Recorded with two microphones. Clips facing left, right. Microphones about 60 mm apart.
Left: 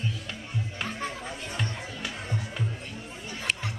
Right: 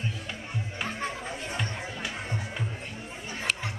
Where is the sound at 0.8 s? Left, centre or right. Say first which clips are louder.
Right 2 dB; centre.